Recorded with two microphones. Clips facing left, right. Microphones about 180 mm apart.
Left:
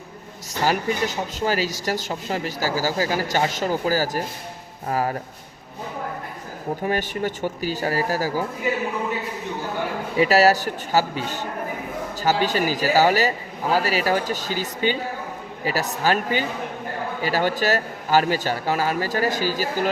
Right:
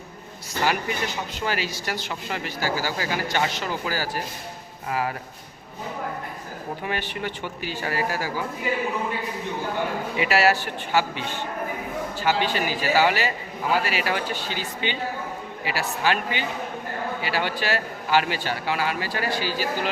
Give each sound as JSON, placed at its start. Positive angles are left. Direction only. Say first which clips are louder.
{"t": 0.6, "sound": "speech", "louder": "left 3 dB", "side_deg": 40}
{"t": 6.8, "sound": "speech", "louder": "left 6 dB", "side_deg": 45}
{"t": 10.2, "sound": "a man's voice", "louder": "left 5 dB", "side_deg": 40}